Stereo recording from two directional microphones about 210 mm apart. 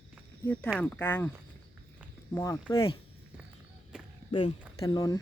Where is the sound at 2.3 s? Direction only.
15° left (ahead or behind).